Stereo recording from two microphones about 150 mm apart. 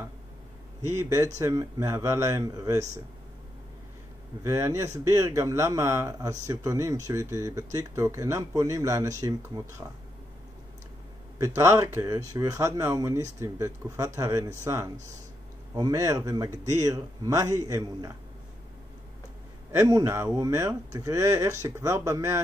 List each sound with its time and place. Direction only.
0.9 s speech: 20° right (ahead or behind)
4.4 s speech: 20° right (ahead or behind)
11.3 s speech: 20° right (ahead or behind)
19.7 s speech: 20° right (ahead or behind)